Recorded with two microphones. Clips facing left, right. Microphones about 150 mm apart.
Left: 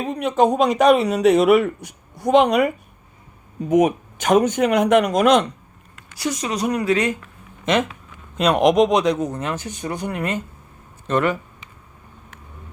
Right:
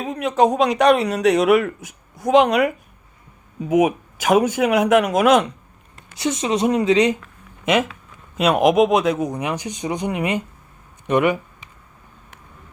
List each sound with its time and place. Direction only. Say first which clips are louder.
0.0 s speech: even; centre (ahead or behind)
6.1 s speech: right 3 dB; 25° right (ahead or behind)
7.6 s speech: right 1 dB; 5° right (ahead or behind)